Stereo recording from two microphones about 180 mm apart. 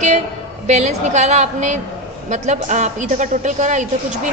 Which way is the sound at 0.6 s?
40° right (ahead or behind).